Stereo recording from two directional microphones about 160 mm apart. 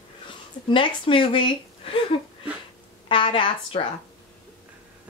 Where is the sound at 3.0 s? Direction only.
35° left (ahead or behind).